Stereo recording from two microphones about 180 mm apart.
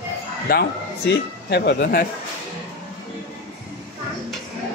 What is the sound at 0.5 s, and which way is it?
Speech, 65° left (ahead or behind).